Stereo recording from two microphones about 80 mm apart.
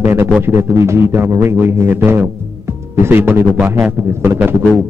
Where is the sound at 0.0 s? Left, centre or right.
Right.